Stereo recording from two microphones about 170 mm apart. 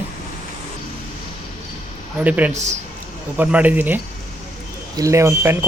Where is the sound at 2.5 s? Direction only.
40° right (ahead or behind).